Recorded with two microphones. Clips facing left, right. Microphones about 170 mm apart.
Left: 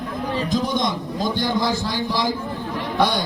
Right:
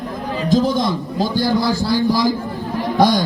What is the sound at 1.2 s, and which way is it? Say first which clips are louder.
Speech: right 4 dB; 35° right (ahead or behind).